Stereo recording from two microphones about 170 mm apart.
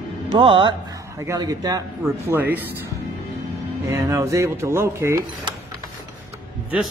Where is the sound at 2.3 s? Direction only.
10° right (ahead or behind).